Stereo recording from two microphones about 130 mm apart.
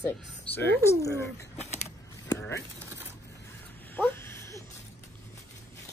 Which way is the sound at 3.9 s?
20° left (ahead or behind).